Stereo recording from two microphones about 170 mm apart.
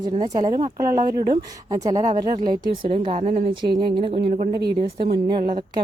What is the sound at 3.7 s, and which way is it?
A woman's voice, 30° right (ahead or behind).